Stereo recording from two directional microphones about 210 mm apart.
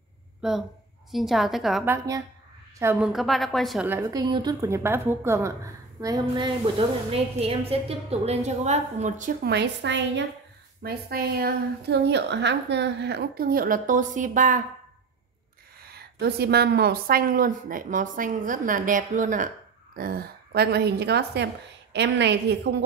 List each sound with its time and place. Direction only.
0.4 s a woman's voice: centre (ahead or behind); by 9.5 s 35° right (ahead or behind)
9.5 s a woman's voice: 55° right (ahead or behind)
10.8 s a woman's voice: 45° right (ahead or behind)
15.9 s a woman's voice: 50° right (ahead or behind)